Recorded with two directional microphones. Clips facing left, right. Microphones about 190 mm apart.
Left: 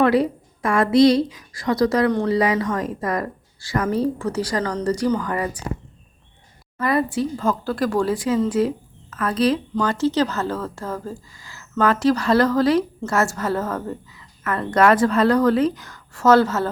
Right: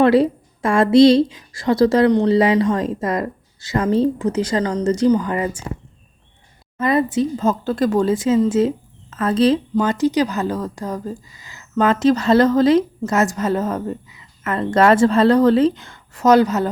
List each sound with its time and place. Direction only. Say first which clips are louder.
0.0 s speech: right 4 dB; 25° right (ahead or behind)
6.7 s speech: right 3 dB; 20° right (ahead or behind)